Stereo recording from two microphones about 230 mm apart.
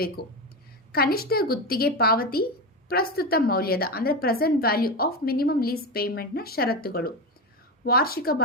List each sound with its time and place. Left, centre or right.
0.2 s a woman's voice: left